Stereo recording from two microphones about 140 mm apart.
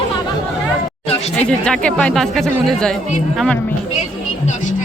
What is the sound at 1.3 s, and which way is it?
Speech, 5° left (ahead or behind).